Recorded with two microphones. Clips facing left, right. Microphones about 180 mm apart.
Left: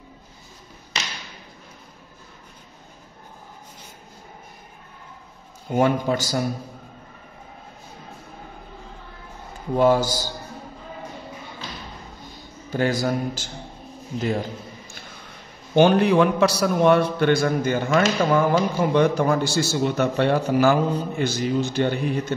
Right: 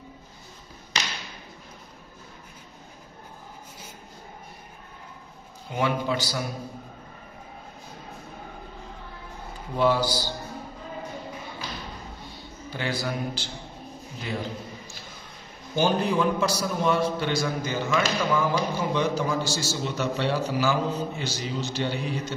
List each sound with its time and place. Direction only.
5.7 s a man's voice: 45° left (ahead or behind)
9.8 s a man's voice: 45° left (ahead or behind)
12.6 s a man's voice: 45° left (ahead or behind)
15.7 s a man's voice: 65° left (ahead or behind)